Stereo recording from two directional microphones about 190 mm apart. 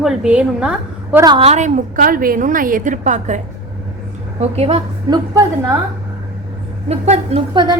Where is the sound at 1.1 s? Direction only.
25° right (ahead or behind); by 3.4 s 40° right (ahead or behind).